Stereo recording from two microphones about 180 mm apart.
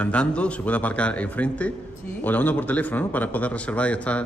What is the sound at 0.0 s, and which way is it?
A man's voice, 5° left (ahead or behind).